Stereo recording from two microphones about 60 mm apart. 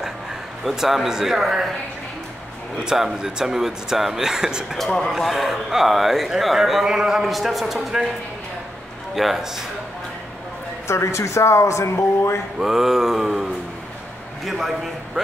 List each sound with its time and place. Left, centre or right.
0.7 s speech: centre
2.8 s speech: centre
4.7 s speech: centre
5.1 s speech: centre
9.1 s speech: centre
10.9 s speech: left
12.5 s a man's voice: centre